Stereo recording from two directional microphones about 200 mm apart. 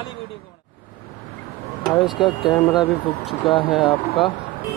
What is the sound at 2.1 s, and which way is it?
Speech, 25° left (ahead or behind).